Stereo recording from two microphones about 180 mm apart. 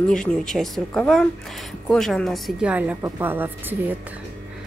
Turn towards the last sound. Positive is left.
turn(degrees=-10)  # may be behind; listen again after turning